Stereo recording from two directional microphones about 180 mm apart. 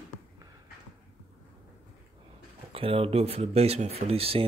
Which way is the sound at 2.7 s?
30° right (ahead or behind).